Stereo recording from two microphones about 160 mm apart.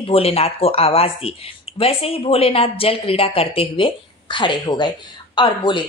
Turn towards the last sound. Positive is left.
turn(degrees=30)  # may be behind; listen again after turning